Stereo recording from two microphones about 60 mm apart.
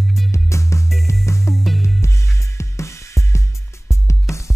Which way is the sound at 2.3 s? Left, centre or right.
Left.